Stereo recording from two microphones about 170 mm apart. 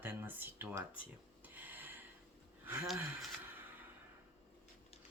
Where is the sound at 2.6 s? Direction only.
15° right (ahead or behind).